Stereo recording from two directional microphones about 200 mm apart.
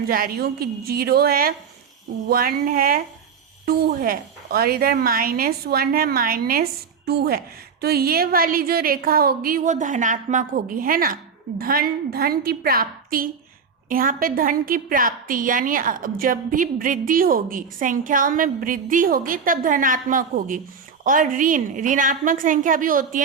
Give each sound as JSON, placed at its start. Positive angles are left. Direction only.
{"t": 0.1, "sound": "a woman's voice", "side_deg": -45}